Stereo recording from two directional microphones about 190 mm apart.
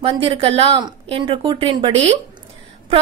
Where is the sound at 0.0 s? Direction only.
30° right (ahead or behind).